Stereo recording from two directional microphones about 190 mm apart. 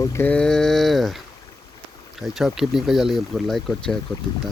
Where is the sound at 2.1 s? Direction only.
Centre (ahead or behind).